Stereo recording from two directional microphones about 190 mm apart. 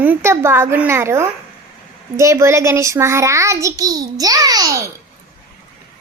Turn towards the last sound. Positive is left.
turn(degrees=-15)  # may be behind; listen again after turning